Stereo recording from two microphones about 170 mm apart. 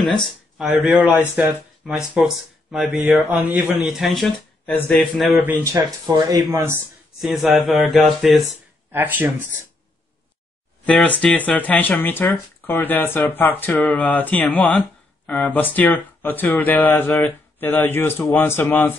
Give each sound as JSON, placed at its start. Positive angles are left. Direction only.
{"t": 0.1, "sound": "speech", "side_deg": 0}
{"t": 5.4, "sound": "speech", "side_deg": -15}
{"t": 7.2, "sound": "speech", "side_deg": 0}
{"t": 8.9, "sound": "speech", "side_deg": -10}
{"t": 10.9, "sound": "speech", "side_deg": 5}